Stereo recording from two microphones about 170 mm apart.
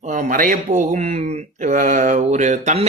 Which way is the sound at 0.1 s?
50° right (ahead or behind).